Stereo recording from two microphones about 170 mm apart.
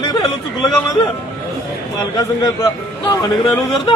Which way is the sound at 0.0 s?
20° left (ahead or behind).